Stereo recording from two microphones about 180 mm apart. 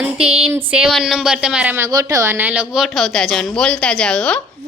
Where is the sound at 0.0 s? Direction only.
5° right (ahead or behind).